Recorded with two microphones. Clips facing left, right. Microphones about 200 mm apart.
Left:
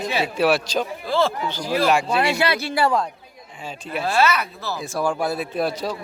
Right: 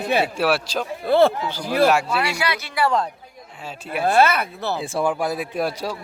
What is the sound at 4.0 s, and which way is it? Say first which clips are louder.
Speech: right 3 dB; 55° right (ahead or behind).